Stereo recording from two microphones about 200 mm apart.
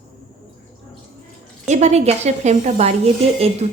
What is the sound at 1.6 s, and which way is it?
Speech, 35° right (ahead or behind).